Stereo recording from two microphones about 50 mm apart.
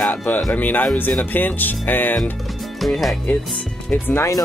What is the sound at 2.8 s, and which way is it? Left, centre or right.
Speech, centre.